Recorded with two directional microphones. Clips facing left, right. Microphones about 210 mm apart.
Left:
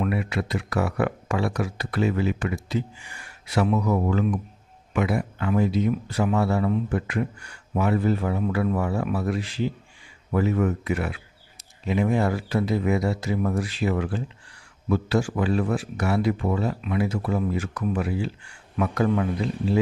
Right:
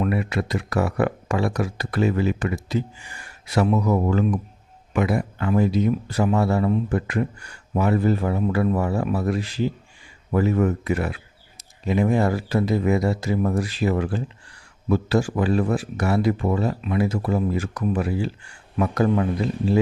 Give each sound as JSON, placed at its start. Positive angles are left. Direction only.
{"t": 0.0, "sound": "speech", "side_deg": -45}